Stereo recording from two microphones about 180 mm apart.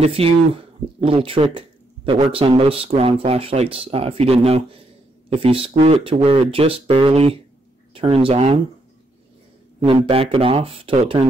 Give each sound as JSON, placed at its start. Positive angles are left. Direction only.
{"t": 0.0, "sound": "speech", "side_deg": -35}
{"t": 10.0, "sound": "speech", "side_deg": -35}